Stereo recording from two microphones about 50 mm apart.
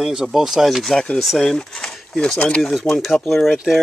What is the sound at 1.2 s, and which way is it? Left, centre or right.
Speech, centre.